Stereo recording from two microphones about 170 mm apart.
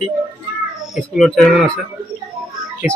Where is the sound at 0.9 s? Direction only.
Centre (ahead or behind).